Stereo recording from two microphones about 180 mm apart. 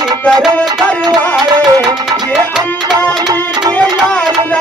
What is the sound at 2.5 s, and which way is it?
Tabla, centre (ahead or behind).